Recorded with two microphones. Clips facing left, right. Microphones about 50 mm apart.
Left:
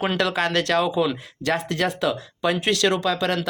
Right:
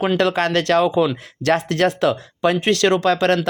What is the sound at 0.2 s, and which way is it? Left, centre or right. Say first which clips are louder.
Speech: right 4 dB; right.